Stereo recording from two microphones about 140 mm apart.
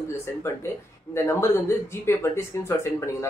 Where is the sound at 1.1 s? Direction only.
20° left (ahead or behind).